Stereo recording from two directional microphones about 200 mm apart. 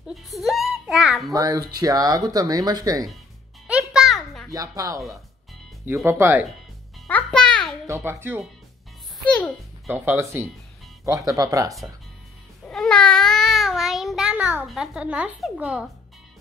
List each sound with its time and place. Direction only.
0.1 s a child's voice: centre (ahead or behind)
1.3 s speech: 15° right (ahead or behind)
3.6 s music: 5° right (ahead or behind)
4.5 s speech: 15° right (ahead or behind)
7.1 s music: 5° left (ahead or behind)
7.8 s speech: 15° right (ahead or behind)
9.2 s a child's voice: 5° left (ahead or behind)
9.8 s speech: 10° right (ahead or behind)
12.6 s speech: 5° left (ahead or behind)